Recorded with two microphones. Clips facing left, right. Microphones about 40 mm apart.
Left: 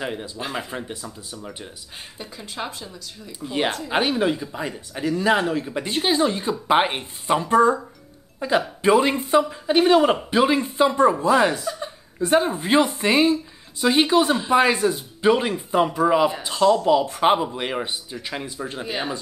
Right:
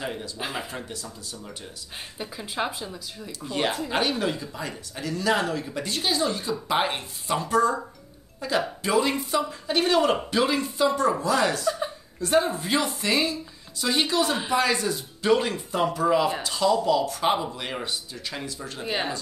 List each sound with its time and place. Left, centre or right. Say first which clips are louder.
0.0 s speech: left 3 dB; left
0.4 s speech: left 2 dB; centre
0.7 s speech: left 4 dB; left
2.1 s speech: right 3 dB; centre
3.3 s speech: left 3 dB; centre
16.8 s speech: left 5 dB; left
18.9 s speech: right 1 dB; centre